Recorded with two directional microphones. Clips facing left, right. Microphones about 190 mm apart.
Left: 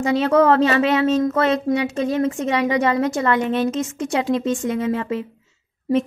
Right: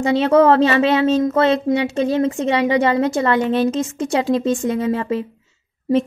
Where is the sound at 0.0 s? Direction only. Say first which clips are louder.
Right 3 dB; 30° right (ahead or behind).